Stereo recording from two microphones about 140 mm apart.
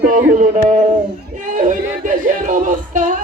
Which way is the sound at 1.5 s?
65° right (ahead or behind).